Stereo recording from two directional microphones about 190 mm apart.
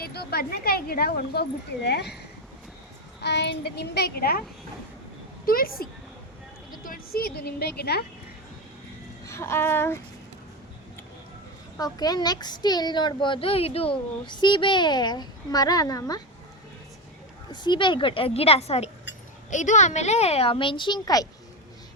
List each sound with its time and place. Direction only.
0.0 s speech: 55° left (ahead or behind)
3.2 s speech: 65° left (ahead or behind)
5.5 s speech: 50° left (ahead or behind)
9.2 s speech: 15° left (ahead or behind)
11.8 s a child's voice: 20° left (ahead or behind)
17.5 s a child's voice: 25° left (ahead or behind)